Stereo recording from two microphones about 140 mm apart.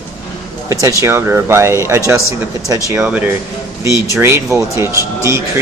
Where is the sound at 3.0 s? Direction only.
10° right (ahead or behind).